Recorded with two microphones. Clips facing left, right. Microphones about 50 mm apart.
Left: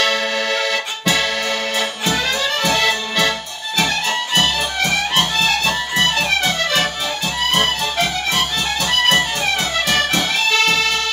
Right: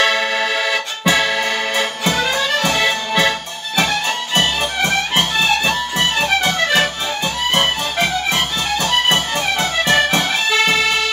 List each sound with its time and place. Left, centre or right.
0.0 s accordion: centre
2.3 s music: right
5.1 s music: right
7.5 s music: right